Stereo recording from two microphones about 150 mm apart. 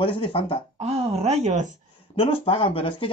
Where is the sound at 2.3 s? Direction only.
35° left (ahead or behind).